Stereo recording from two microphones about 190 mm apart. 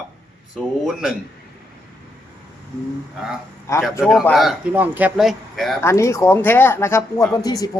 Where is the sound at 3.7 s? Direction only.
15° left (ahead or behind).